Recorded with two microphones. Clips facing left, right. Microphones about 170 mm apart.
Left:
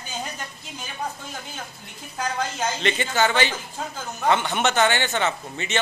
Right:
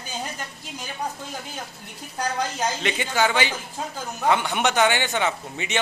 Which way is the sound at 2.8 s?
10° right (ahead or behind).